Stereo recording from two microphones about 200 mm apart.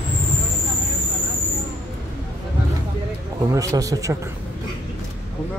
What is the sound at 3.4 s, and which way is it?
Speech, 15° right (ahead or behind).